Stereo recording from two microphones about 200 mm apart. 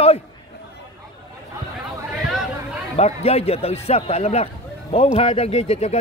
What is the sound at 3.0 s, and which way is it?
A man's voice, 30° left (ahead or behind).